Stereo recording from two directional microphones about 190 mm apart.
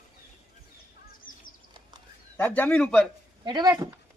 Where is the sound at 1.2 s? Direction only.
45° left (ahead or behind).